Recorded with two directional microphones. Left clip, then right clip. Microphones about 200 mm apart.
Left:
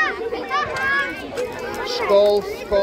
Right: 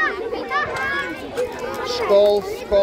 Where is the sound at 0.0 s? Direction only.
10° left (ahead or behind).